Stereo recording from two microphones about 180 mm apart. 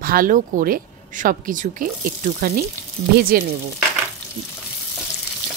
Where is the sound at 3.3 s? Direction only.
55° right (ahead or behind).